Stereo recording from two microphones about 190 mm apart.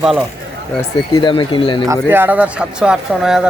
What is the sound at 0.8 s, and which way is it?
Speech, 20° left (ahead or behind).